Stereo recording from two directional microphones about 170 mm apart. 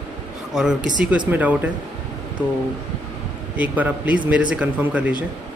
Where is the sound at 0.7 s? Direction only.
50° right (ahead or behind).